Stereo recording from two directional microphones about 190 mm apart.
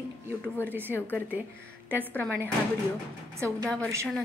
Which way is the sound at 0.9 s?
10° left (ahead or behind).